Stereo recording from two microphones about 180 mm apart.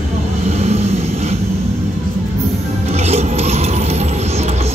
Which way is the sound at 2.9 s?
35° right (ahead or behind).